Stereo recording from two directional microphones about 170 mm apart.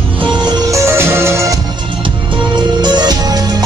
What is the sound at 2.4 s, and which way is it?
Music, 25° right (ahead or behind).